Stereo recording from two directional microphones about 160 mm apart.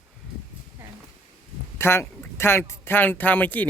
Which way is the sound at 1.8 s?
15° left (ahead or behind).